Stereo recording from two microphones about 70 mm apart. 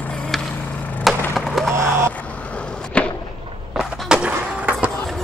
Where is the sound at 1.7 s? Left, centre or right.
Right.